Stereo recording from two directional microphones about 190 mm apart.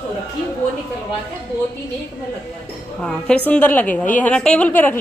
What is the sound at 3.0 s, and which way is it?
A woman's voice, 5° left (ahead or behind).